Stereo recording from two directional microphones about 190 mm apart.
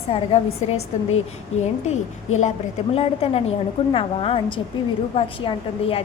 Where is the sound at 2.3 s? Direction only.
90° left.